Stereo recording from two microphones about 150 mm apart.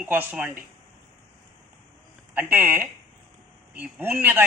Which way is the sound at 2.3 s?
15° right (ahead or behind).